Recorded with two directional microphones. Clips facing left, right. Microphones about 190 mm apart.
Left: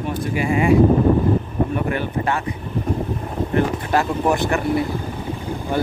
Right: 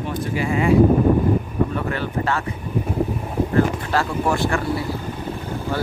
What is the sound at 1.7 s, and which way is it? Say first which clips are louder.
Vehicle: left 2 dB; 15° left (ahead or behind).